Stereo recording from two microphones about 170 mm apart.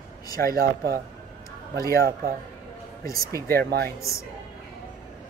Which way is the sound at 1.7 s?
20° left (ahead or behind).